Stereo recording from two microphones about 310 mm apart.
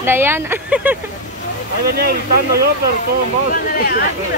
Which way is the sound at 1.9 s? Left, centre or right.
Right.